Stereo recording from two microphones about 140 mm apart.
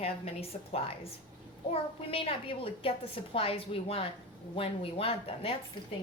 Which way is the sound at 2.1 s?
40° left (ahead or behind).